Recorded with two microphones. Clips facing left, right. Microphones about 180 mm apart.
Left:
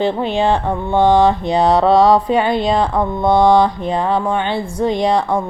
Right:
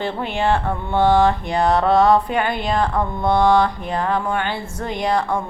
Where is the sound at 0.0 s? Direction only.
20° left (ahead or behind).